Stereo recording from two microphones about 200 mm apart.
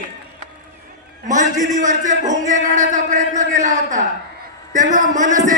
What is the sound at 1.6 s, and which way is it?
A man's voice, 40° right (ahead or behind).